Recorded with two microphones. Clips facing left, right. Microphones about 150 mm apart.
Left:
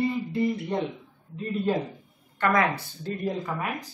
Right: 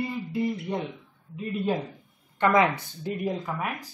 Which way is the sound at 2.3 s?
20° right (ahead or behind).